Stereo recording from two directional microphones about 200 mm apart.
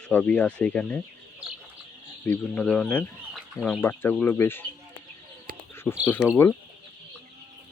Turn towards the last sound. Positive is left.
turn(degrees=10)  # may be behind; listen again after turning